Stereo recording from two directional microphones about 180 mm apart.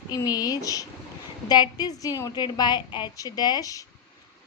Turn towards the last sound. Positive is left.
turn(degrees=20)  # may be behind; listen again after turning